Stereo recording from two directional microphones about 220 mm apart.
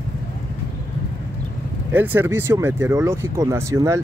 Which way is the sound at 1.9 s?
10° right (ahead or behind).